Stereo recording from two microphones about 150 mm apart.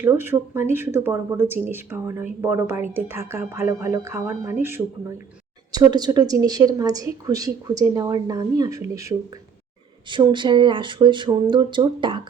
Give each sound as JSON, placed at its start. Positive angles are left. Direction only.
{"t": 0.0, "sound": "speech", "side_deg": -15}
{"t": 5.7, "sound": "a woman's voice", "side_deg": -25}
{"t": 10.1, "sound": "speech", "side_deg": -30}